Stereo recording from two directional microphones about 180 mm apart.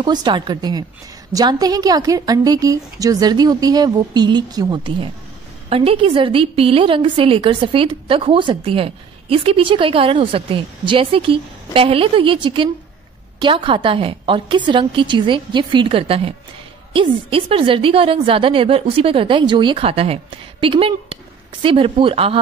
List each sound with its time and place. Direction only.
0.0 s a woman's voice: 25° right (ahead or behind)